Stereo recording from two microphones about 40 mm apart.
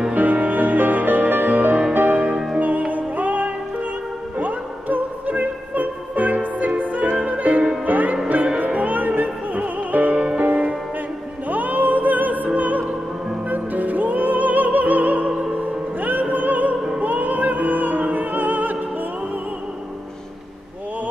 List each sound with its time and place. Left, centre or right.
0.1 s music: right
10.1 s music: right
10.4 s music: right
12.5 s opera: right
13.5 s music: right